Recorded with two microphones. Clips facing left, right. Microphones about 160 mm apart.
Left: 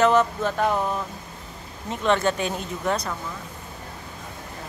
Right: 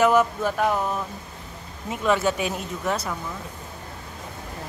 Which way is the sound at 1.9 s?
5° right (ahead or behind).